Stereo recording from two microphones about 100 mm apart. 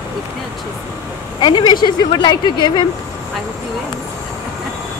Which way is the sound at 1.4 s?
45° left (ahead or behind).